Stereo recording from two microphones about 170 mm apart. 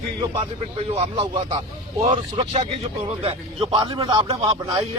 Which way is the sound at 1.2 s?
35° right (ahead or behind).